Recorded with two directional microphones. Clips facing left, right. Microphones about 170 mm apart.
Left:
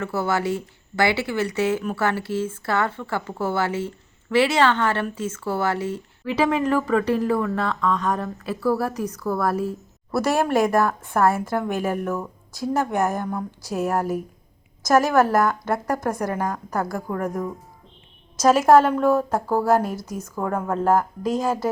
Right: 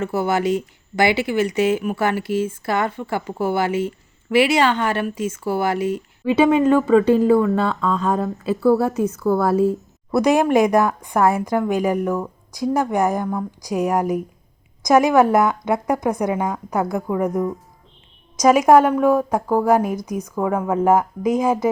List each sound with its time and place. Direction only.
0.0 s speech: 15° right (ahead or behind)
6.3 s speech: 25° right (ahead or behind)
15.7 s a woman's voice: centre (ahead or behind)
18.7 s speech: 10° right (ahead or behind)
20.7 s speech: 15° right (ahead or behind)